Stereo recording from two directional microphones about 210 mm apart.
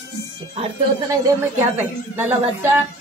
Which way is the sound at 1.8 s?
10° right (ahead or behind).